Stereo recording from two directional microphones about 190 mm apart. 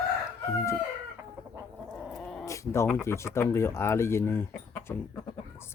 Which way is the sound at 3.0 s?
15° left (ahead or behind).